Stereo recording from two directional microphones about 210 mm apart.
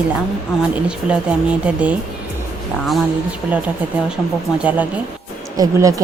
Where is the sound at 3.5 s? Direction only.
5° right (ahead or behind).